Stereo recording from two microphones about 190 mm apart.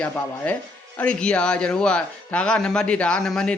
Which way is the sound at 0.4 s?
10° left (ahead or behind).